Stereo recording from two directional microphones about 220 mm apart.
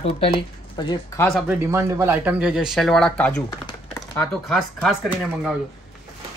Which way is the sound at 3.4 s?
20° left (ahead or behind).